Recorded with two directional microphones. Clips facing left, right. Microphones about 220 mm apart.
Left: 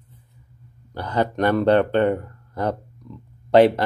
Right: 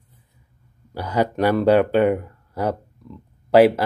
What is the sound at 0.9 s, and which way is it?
Speech, 10° right (ahead or behind).